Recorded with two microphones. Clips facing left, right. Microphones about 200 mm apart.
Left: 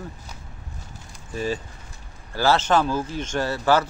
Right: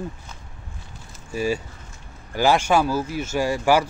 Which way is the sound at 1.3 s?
10° right (ahead or behind).